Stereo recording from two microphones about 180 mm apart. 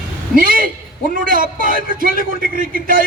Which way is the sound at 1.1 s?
50° right (ahead or behind).